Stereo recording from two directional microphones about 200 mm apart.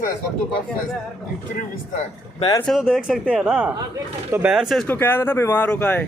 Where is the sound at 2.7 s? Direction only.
Centre (ahead or behind).